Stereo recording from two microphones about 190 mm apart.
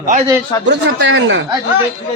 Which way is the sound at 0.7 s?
70° right (ahead or behind).